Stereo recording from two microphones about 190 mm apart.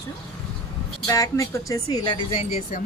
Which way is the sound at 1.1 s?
15° left (ahead or behind).